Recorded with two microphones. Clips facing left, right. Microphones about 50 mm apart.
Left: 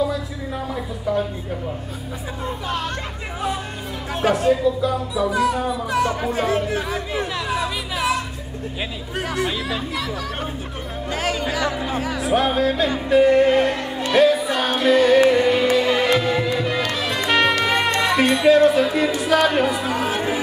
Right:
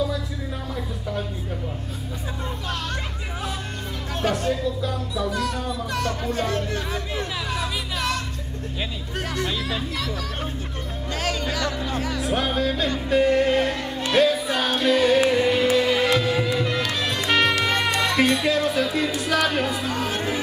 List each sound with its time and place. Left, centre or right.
0.7 s a sound: centre
4.1 s speech: centre
9.3 s speech: centre
14.1 s music: centre